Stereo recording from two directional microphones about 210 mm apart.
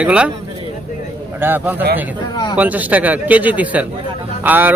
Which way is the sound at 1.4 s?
10° right (ahead or behind).